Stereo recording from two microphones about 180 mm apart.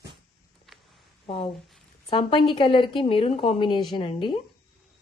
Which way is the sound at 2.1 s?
25° left (ahead or behind).